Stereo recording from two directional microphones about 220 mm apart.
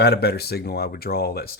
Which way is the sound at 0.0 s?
45° left (ahead or behind).